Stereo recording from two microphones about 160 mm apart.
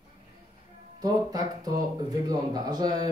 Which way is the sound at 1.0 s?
25° right (ahead or behind).